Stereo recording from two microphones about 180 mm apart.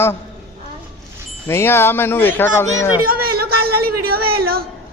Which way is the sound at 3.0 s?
55° right (ahead or behind).